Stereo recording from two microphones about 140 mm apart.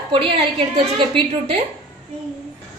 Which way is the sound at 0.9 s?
35° right (ahead or behind).